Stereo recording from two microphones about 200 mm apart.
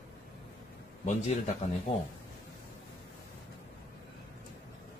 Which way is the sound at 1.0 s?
35° left (ahead or behind).